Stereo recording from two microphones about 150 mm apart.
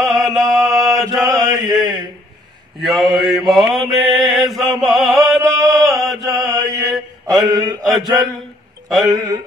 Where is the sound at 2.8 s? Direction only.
Centre (ahead or behind).